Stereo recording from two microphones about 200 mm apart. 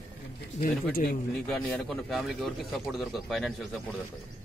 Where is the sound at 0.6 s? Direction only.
45° left (ahead or behind).